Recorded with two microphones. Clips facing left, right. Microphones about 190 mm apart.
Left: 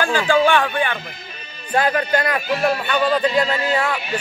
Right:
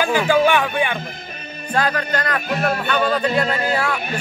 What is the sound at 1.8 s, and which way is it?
Speech, 20° left (ahead or behind).